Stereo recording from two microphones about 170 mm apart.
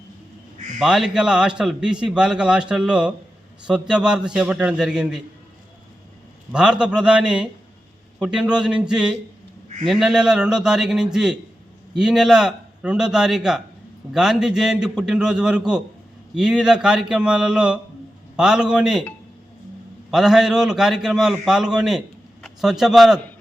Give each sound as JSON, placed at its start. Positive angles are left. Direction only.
{"t": 0.8, "sound": "a man's voice", "side_deg": 0}
{"t": 6.5, "sound": "a man's voice", "side_deg": -5}
{"t": 20.1, "sound": "a man's voice", "side_deg": -5}